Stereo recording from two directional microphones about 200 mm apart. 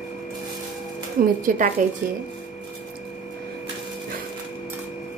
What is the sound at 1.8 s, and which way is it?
Speech, 40° right (ahead or behind).